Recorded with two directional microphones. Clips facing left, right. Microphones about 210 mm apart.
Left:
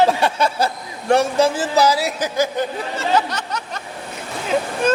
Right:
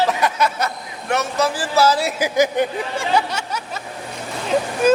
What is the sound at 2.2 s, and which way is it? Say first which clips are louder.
Speech: right 3 dB; 15° right (ahead or behind).